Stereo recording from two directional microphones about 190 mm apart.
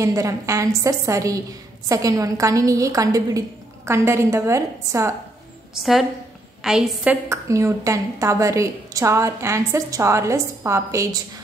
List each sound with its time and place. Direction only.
0.0 s a woman's voice: 15° right (ahead or behind)
5.8 s a woman's voice: centre (ahead or behind)
7.2 s a woman's voice: 15° right (ahead or behind)